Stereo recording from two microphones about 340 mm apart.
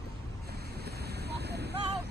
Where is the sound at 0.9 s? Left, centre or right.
Right.